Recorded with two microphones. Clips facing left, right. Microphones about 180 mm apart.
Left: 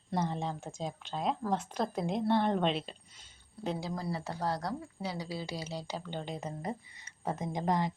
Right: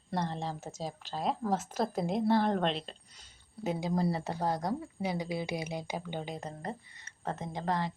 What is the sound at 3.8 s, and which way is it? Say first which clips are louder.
Speech: right 5 dB; 20° right (ahead or behind).